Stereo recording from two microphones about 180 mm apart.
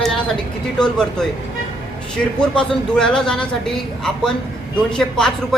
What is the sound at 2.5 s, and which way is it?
Speech, 5° left (ahead or behind).